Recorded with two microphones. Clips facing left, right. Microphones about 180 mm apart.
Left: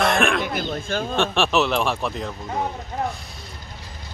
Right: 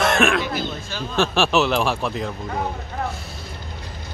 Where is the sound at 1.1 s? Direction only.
Centre (ahead or behind).